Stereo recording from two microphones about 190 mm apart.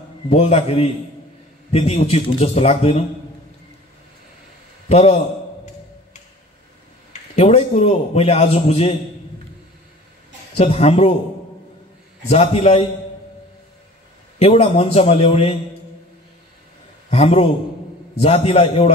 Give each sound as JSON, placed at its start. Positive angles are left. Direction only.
{"t": 0.3, "sound": "a man's voice", "side_deg": 35}
{"t": 4.8, "sound": "a man's voice", "side_deg": 30}
{"t": 7.1, "sound": "a man's voice", "side_deg": 30}
{"t": 10.6, "sound": "a man's voice", "side_deg": 35}
{"t": 12.3, "sound": "a man's voice", "side_deg": 30}
{"t": 14.4, "sound": "a man's voice", "side_deg": 35}
{"t": 17.1, "sound": "a man's voice", "side_deg": 30}